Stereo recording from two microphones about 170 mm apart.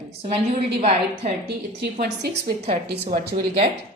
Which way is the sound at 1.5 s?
75° right (ahead or behind).